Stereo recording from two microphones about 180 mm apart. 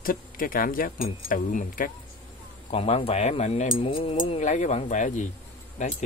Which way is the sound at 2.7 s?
35° left (ahead or behind).